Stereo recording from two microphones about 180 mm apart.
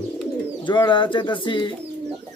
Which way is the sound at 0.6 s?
25° left (ahead or behind).